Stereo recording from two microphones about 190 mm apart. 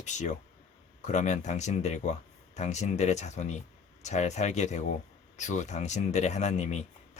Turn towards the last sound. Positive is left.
turn(degrees=35)  # may be behind; listen again after turning